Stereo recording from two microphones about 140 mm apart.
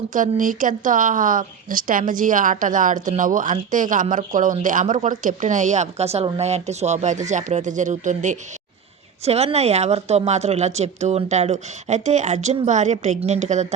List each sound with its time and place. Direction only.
0.1 s speech: 70° right (ahead or behind)
9.2 s a woman's voice: 50° right (ahead or behind)